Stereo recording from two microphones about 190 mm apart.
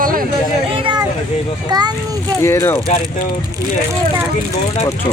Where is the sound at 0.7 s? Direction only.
25° right (ahead or behind).